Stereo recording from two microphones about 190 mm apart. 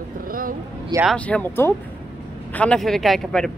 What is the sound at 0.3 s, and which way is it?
Vehicle, 50° right (ahead or behind).